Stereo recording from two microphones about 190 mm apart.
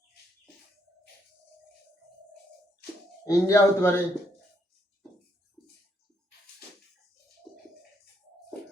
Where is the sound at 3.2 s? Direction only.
15° left (ahead or behind).